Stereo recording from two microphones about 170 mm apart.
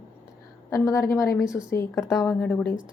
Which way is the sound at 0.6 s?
20° left (ahead or behind).